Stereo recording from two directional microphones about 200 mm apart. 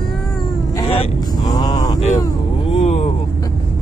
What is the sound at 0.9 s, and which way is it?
Speech, 25° left (ahead or behind).